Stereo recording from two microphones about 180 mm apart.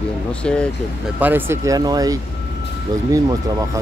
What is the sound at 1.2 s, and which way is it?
Speech, 10° right (ahead or behind).